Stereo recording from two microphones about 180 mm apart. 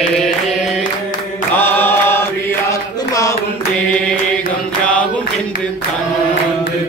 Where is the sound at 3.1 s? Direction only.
15° left (ahead or behind).